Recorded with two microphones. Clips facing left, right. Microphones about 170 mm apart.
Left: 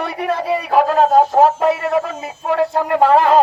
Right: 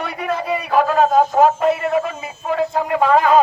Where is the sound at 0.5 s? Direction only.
35° left (ahead or behind).